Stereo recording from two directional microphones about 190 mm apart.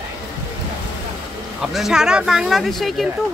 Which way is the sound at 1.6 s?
Centre (ahead or behind).